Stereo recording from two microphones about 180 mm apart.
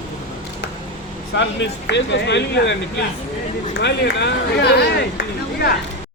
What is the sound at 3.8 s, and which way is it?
Speech, 70° left (ahead or behind).